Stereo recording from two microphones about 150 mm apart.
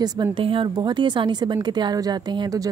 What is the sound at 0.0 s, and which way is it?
A woman's voice, 25° right (ahead or behind).